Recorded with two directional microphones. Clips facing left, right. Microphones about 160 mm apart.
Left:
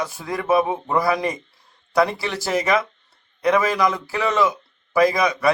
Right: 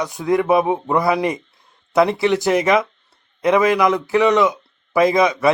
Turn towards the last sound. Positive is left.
turn(degrees=-20)  # may be behind; listen again after turning